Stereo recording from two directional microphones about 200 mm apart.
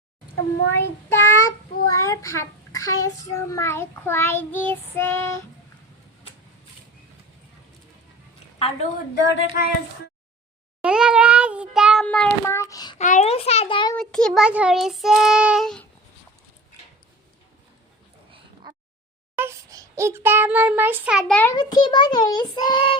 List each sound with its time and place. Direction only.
0.7 s child singing: 10° left (ahead or behind)
8.5 s a woman's voice: 30° left (ahead or behind)
9.3 s speech: 60° left (ahead or behind)
10.8 s a sound: 5° right (ahead or behind)
12.0 s child singing: 5° left (ahead or behind)
13.0 s a child's voice: 35° left (ahead or behind)
13.9 s child singing: 5° left (ahead or behind)
18.3 s a sound: 25° right (ahead or behind)
19.4 s a sound: 15° right (ahead or behind); by 21.5 s 5° left (ahead or behind)
21.5 s a child's voice: 20° left (ahead or behind)